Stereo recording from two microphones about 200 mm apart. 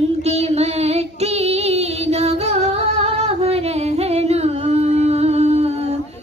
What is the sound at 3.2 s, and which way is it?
Singing, 30° right (ahead or behind).